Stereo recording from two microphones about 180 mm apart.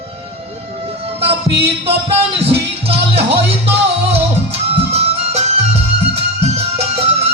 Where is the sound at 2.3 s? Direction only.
35° right (ahead or behind).